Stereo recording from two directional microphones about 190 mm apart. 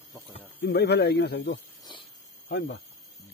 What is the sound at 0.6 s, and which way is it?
Speech, 60° left (ahead or behind).